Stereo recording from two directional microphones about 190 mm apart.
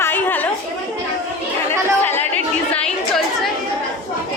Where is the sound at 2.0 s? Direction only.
10° left (ahead or behind).